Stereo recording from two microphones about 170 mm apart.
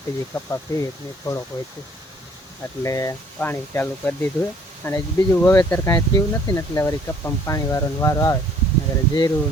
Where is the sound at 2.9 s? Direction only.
20° left (ahead or behind).